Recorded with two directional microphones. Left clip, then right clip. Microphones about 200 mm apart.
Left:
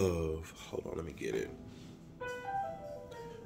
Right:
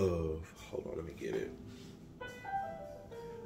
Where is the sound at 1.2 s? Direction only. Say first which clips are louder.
Left 2 dB; 45° left (ahead or behind).